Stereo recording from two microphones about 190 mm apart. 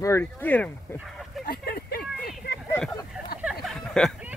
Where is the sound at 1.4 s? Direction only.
55° left (ahead or behind).